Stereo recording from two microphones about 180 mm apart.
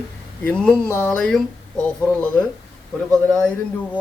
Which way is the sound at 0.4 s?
5° left (ahead or behind).